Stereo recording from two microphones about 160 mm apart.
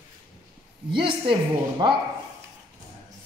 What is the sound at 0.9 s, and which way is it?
A woman's voice, 30° right (ahead or behind).